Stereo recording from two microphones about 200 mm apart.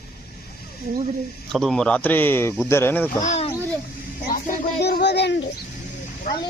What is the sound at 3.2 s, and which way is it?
Speech, 35° left (ahead or behind).